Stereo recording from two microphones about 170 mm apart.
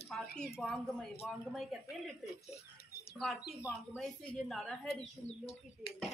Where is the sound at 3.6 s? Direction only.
10° right (ahead or behind).